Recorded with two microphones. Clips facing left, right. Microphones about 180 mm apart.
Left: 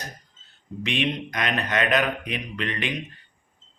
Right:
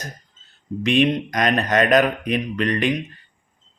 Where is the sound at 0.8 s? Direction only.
45° right (ahead or behind).